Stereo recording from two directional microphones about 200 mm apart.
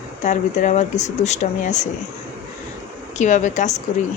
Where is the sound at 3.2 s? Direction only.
35° left (ahead or behind).